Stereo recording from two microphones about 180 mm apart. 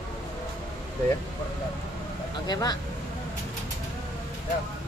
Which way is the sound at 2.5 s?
20° left (ahead or behind).